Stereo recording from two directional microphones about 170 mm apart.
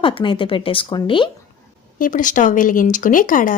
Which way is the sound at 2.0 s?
55° left (ahead or behind).